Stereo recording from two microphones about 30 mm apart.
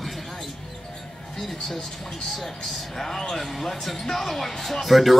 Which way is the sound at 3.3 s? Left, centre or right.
Centre.